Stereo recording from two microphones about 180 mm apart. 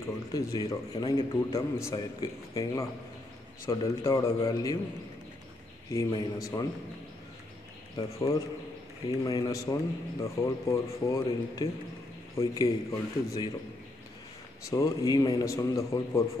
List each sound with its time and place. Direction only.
0.3 s a man's voice: 20° left (ahead or behind)
5.9 s a man's voice: 20° left (ahead or behind)
7.9 s a man's voice: 20° left (ahead or behind)
14.7 s a man's voice: 20° left (ahead or behind)